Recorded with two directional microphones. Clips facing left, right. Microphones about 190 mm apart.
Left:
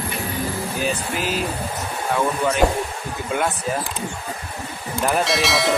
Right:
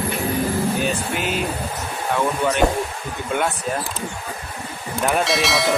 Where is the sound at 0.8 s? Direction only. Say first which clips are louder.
Right 1 dB; centre (ahead or behind).